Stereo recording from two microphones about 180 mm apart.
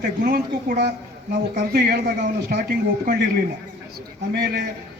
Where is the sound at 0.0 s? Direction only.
55° right (ahead or behind).